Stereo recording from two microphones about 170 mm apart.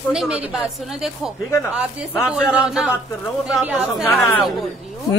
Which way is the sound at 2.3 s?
5° right (ahead or behind).